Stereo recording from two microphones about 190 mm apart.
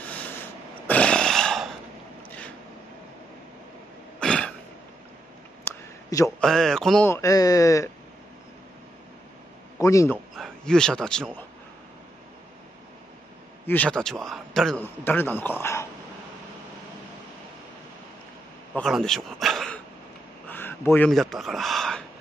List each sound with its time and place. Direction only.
0.0 s a sound: 5° left (ahead or behind)
4.2 s throat clearing: 5° left (ahead or behind)
5.7 s a sound: 15° left (ahead or behind)
6.4 s speech: centre (ahead or behind)
7.1 s a man's voice: 15° left (ahead or behind)
9.8 s a man's voice: 15° left (ahead or behind)
10.3 s a man's voice: centre (ahead or behind)
13.7 s a man's voice: 5° left (ahead or behind)
18.8 s speech: centre (ahead or behind)